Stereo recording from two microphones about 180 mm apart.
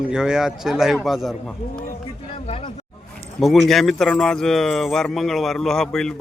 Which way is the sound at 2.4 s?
30° left (ahead or behind).